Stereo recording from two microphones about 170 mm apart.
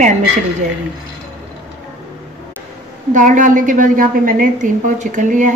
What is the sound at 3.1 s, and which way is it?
A woman's voice, 50° right (ahead or behind).